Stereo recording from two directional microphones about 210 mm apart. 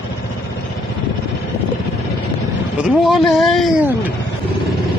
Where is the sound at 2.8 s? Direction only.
Centre (ahead or behind).